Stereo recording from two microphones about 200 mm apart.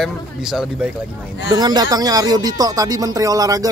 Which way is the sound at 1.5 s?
20° right (ahead or behind).